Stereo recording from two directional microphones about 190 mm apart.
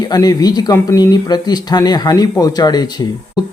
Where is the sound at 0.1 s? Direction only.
20° left (ahead or behind).